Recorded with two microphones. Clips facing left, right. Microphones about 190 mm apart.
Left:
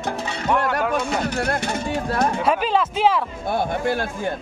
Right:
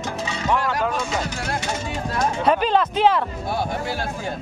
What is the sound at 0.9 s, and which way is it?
Speech, 60° left (ahead or behind).